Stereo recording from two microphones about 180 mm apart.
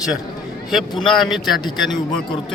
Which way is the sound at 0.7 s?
Centre (ahead or behind).